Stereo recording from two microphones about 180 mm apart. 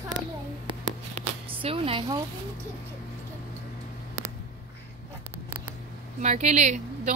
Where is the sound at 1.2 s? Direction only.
30° right (ahead or behind).